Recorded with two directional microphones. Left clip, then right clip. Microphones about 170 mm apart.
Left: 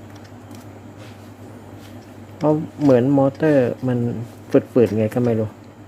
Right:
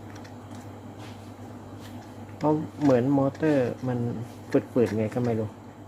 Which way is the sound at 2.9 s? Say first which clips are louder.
Left 7 dB; 30° left (ahead or behind).